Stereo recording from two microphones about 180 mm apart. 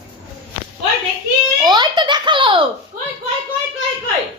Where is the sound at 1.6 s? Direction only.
25° right (ahead or behind).